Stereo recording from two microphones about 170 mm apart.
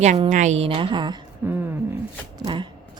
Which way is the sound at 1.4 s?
10° right (ahead or behind).